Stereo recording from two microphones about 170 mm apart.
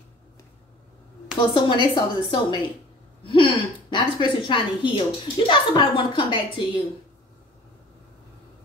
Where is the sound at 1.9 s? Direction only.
30° left (ahead or behind).